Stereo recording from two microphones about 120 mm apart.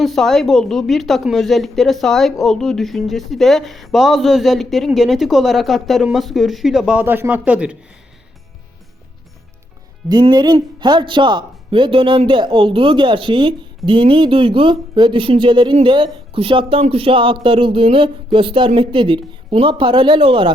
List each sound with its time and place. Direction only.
0.0 s speech: 5° left (ahead or behind)
7.0 s speech: 15° right (ahead or behind)
10.1 s speech: 35° right (ahead or behind)